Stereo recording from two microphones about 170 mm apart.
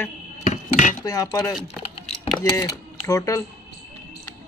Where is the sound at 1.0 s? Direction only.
20° left (ahead or behind).